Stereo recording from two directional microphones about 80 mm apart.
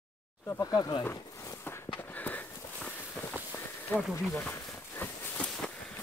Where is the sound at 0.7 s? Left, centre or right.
Left.